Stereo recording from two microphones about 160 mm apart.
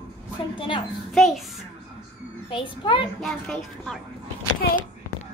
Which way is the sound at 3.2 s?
Centre (ahead or behind).